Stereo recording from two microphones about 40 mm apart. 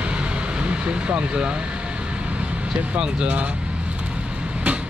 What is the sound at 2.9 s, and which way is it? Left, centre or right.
Speech, right.